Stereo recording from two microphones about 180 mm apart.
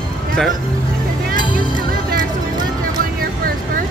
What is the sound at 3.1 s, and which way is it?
Vehicle, 55° right (ahead or behind).